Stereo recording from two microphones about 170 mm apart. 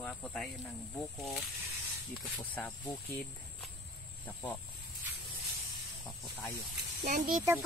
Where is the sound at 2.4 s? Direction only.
10° left (ahead or behind).